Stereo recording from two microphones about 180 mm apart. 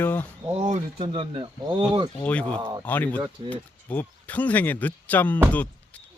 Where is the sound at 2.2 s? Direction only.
5° left (ahead or behind).